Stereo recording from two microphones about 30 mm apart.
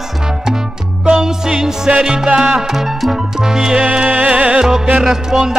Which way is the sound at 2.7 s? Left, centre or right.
Centre.